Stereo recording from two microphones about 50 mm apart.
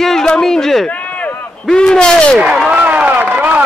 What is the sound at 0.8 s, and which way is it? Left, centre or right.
Run, left.